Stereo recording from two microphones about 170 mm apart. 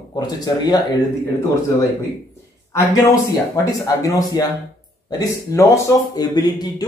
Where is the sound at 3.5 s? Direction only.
20° left (ahead or behind).